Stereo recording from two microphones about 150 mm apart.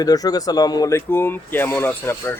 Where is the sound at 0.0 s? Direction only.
25° left (ahead or behind).